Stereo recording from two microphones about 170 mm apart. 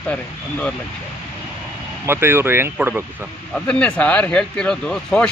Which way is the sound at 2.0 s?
15° right (ahead or behind).